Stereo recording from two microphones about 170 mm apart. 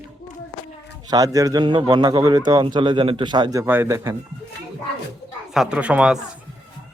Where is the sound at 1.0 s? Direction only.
20° right (ahead or behind).